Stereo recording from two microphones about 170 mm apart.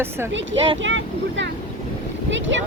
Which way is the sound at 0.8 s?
90° right.